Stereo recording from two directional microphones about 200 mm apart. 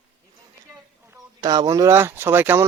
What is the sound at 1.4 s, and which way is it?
Speech, 20° right (ahead or behind).